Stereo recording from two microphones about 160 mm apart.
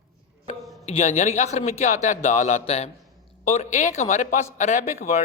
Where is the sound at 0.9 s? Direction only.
45° left (ahead or behind).